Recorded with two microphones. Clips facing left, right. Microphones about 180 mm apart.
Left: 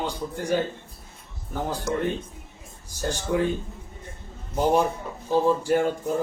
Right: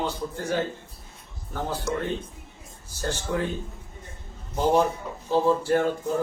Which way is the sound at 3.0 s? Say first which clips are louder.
Left 3 dB; 15° left (ahead or behind).